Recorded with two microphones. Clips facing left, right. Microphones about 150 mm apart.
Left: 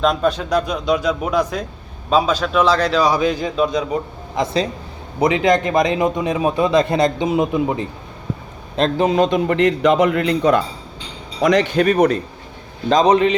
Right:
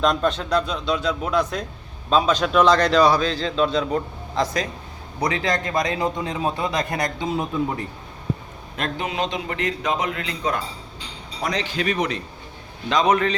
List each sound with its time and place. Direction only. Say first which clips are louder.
0.0 s a man's voice: left 3 dB; 5° left (ahead or behind)
8.7 s a man's voice: left 11 dB; 35° left (ahead or behind); by 10.6 s 65° left (ahead or behind)
11.3 s a man's voice: left 11 dB; 85° left; by 13.1 s 40° left (ahead or behind)